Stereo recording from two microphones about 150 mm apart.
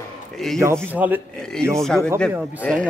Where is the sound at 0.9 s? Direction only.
10° right (ahead or behind).